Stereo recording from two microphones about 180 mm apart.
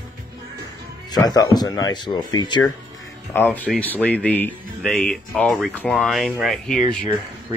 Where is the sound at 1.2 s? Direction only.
20° left (ahead or behind).